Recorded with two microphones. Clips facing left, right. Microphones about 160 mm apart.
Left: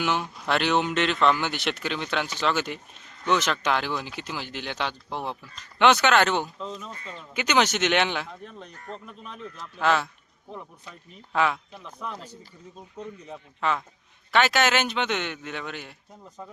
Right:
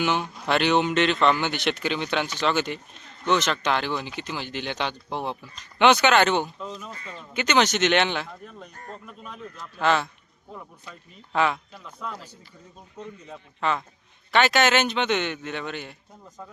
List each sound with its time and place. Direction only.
0.0 s speech: centre (ahead or behind)
11.3 s speech: centre (ahead or behind)
11.7 s speech: 15° left (ahead or behind)
13.6 s speech: 5° left (ahead or behind)